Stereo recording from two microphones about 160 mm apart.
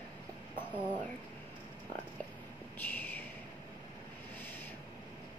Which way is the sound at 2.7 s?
10° left (ahead or behind).